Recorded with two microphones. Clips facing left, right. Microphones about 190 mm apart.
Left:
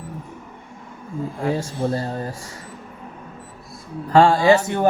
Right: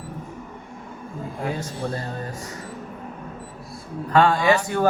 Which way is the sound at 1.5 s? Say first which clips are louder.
Left 5 dB; 30° left (ahead or behind).